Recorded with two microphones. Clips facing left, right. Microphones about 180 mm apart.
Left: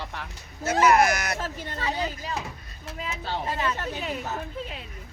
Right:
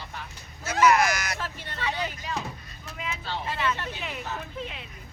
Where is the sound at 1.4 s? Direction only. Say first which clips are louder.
Left 2 dB; 40° left (ahead or behind).